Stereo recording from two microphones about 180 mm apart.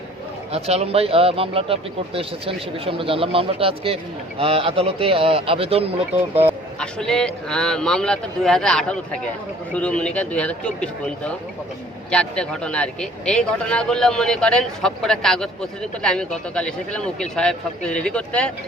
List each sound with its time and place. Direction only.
0.5 s speech: 35° right (ahead or behind)
6.7 s a man's voice: 5° left (ahead or behind)